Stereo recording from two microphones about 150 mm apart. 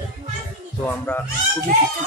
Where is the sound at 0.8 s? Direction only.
15° left (ahead or behind).